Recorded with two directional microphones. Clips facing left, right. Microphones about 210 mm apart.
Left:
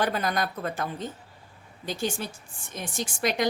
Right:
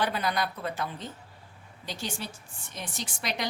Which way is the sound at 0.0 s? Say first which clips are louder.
Left 2 dB; 45° left (ahead or behind).